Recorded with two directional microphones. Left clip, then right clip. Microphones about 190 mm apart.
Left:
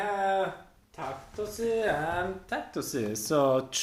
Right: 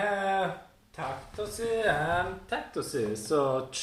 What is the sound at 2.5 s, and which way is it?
Speech, 55° left (ahead or behind).